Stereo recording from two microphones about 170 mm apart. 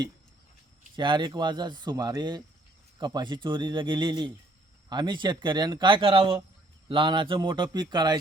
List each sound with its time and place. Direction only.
0.9 s speech: 25° right (ahead or behind)